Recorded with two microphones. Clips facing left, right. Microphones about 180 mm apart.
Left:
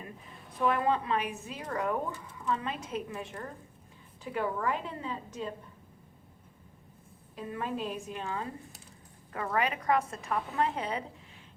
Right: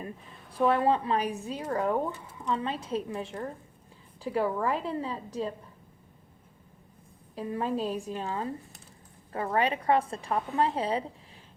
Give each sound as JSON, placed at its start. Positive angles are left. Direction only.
{"t": 0.5, "sound": "a woman's voice", "side_deg": -30}
{"t": 7.3, "sound": "speech", "side_deg": -35}